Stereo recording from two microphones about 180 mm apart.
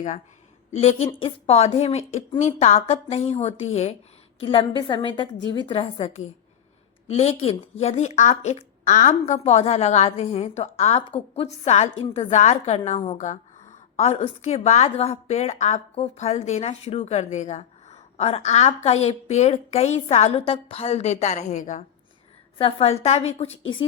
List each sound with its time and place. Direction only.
0.7 s a woman's voice: 35° left (ahead or behind)
22.5 s speech: 30° left (ahead or behind)